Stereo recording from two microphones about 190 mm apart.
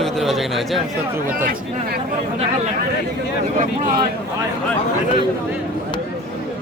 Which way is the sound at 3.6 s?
45° right (ahead or behind).